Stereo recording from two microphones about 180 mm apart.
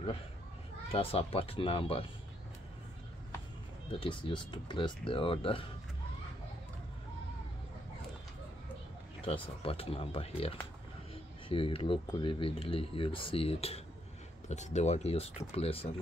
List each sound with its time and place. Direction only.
0.9 s speech: 30° left (ahead or behind)
4.0 s speech: 25° left (ahead or behind)
9.2 s speech: 30° left (ahead or behind)